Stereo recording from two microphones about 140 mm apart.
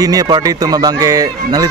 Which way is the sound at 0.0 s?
25° right (ahead or behind).